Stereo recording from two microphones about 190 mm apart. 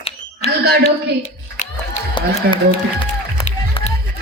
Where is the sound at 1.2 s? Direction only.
35° left (ahead or behind).